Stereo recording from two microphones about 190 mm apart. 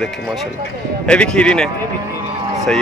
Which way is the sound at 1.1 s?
5° left (ahead or behind).